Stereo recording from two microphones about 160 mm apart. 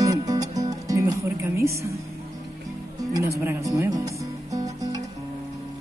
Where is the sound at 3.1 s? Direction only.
20° right (ahead or behind).